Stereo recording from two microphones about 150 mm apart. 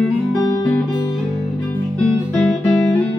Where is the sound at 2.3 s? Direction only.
5° left (ahead or behind).